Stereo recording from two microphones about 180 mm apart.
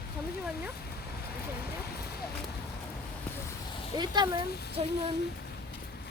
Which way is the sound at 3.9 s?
25° right (ahead or behind).